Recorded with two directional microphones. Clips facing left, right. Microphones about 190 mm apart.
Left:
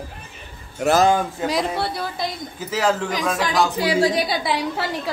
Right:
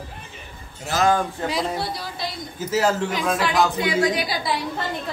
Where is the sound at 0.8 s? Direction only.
65° left (ahead or behind).